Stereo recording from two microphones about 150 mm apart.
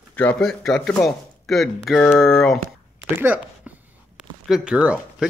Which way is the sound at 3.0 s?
10° right (ahead or behind).